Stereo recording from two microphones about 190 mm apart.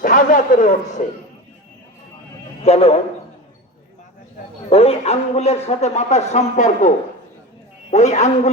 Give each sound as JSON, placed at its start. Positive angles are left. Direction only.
{"t": 0.0, "sound": "a man's voice", "side_deg": 45}
{"t": 2.6, "sound": "a man's voice", "side_deg": 30}
{"t": 4.7, "sound": "a man's voice", "side_deg": 30}